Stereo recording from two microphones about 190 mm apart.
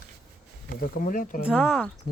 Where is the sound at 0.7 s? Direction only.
45° left (ahead or behind).